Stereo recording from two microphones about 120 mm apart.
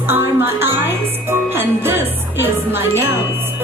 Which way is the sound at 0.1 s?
20° right (ahead or behind).